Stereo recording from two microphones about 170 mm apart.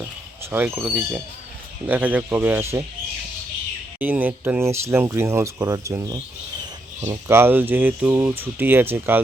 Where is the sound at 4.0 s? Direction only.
10° right (ahead or behind).